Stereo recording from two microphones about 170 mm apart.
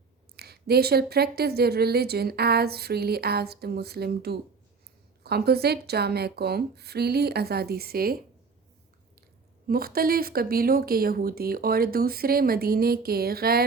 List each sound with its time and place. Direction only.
0.3 s a woman's voice: 70° right (ahead or behind)
9.6 s speech: 60° right (ahead or behind)